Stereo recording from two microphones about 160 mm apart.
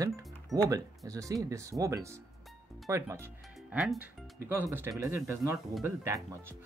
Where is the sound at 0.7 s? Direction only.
20° right (ahead or behind).